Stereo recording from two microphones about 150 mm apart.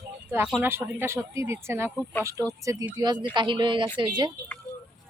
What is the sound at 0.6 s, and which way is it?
Speech, 15° right (ahead or behind).